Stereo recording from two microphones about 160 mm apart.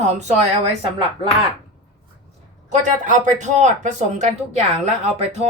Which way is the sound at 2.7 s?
50° right (ahead or behind).